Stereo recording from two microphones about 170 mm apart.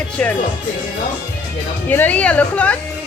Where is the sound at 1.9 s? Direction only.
10° left (ahead or behind).